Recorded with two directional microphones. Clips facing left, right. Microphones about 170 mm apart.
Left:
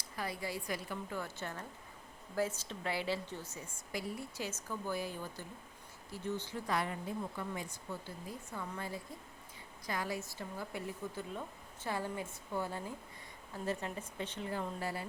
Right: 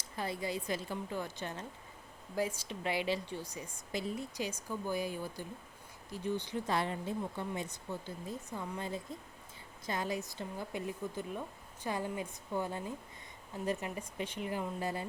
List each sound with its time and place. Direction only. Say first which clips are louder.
0.2 s a woman's voice: right 3 dB; 25° right (ahead or behind)
6.7 s a woman's voice: right 1 dB; 25° right (ahead or behind)